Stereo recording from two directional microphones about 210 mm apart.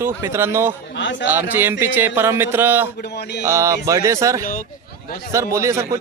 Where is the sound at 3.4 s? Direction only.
15° right (ahead or behind).